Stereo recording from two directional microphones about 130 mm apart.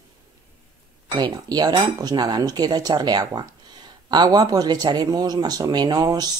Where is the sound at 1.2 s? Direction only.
30° right (ahead or behind).